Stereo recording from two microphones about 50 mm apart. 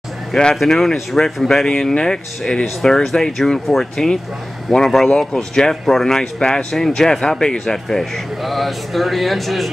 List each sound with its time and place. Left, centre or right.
0.6 s speech: centre